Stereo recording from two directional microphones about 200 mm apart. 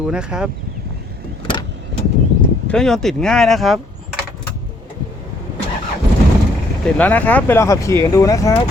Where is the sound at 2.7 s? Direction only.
5° left (ahead or behind).